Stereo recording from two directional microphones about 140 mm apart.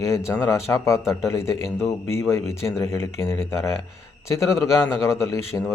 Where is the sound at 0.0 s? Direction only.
20° left (ahead or behind).